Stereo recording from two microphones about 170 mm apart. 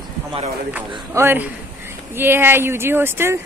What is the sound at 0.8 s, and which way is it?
Speech, 10° right (ahead or behind).